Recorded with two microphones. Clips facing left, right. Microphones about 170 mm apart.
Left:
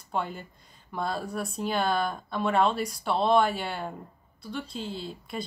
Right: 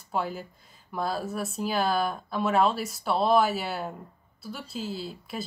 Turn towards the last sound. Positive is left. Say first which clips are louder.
# even
turn(degrees=-5)  # may be behind; listen again after turning